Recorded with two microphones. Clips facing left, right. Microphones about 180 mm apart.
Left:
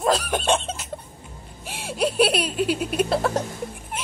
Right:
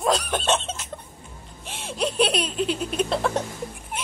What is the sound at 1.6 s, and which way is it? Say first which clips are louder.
Giggle: left 3 dB; 5° left (ahead or behind).